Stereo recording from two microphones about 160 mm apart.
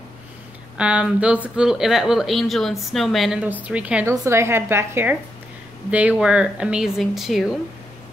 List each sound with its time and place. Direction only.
0.7 s a woman's voice: 5° right (ahead or behind)